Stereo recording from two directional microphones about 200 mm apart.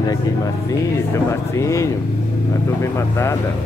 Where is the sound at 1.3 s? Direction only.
15° left (ahead or behind).